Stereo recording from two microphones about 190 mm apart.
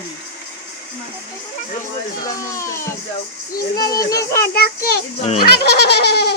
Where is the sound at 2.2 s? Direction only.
15° left (ahead or behind).